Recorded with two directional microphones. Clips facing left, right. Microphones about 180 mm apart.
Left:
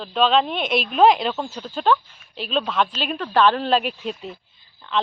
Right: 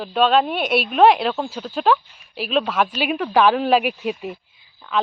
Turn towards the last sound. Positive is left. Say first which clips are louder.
# right 1 dB
turn(degrees=-5)  # may be behind; listen again after turning